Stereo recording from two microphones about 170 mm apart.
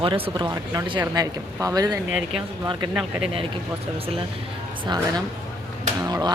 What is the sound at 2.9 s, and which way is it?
Speech, 5° right (ahead or behind).